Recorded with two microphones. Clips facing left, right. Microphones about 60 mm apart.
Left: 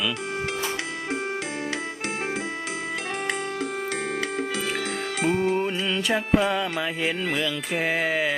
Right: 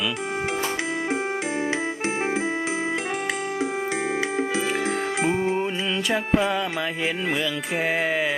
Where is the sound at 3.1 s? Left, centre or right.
Centre.